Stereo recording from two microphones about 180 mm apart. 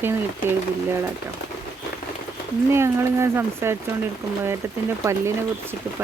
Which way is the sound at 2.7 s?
15° right (ahead or behind).